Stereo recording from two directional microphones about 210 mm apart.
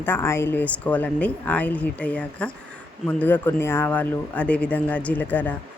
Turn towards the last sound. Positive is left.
turn(degrees=10)  # may be behind; listen again after turning